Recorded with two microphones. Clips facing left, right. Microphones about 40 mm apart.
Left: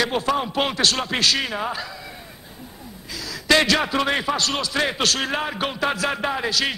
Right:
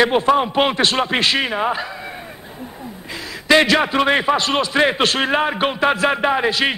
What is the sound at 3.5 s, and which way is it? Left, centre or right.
A man's voice, right.